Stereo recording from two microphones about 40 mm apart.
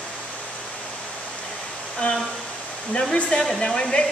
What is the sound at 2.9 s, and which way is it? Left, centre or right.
Hair dryer, left.